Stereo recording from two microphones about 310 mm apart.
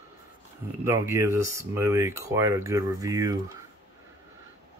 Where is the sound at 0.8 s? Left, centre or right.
Centre.